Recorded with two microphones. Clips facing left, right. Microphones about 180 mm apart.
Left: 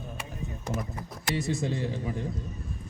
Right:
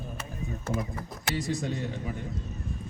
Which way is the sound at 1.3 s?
25° left (ahead or behind).